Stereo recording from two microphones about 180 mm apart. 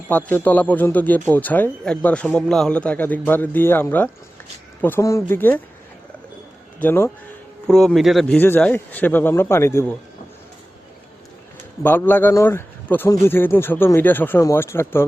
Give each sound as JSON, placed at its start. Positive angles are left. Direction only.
{"t": 0.1, "sound": "a man's voice", "side_deg": 10}
{"t": 6.7, "sound": "a man's voice", "side_deg": 10}
{"t": 11.8, "sound": "a man's voice", "side_deg": 10}